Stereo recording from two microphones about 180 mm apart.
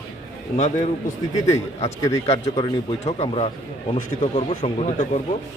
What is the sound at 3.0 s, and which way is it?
A man's voice, 35° left (ahead or behind).